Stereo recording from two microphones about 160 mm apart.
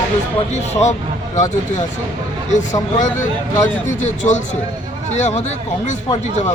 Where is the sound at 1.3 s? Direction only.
50° left (ahead or behind).